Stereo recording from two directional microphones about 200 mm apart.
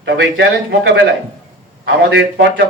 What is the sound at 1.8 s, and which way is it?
Speech, 55° right (ahead or behind).